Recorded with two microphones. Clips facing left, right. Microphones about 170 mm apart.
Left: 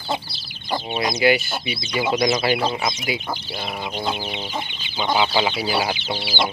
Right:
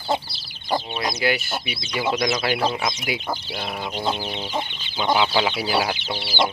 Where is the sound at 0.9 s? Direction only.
15° left (ahead or behind).